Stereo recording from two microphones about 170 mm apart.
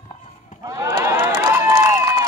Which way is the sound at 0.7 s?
20° right (ahead or behind).